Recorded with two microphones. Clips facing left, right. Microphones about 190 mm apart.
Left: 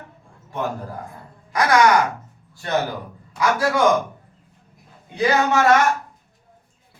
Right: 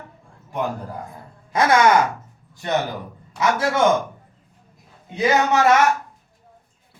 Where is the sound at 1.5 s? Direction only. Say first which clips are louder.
Right 1 dB; 25° right (ahead or behind).